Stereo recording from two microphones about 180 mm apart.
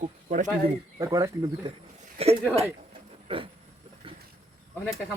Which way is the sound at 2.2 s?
35° right (ahead or behind).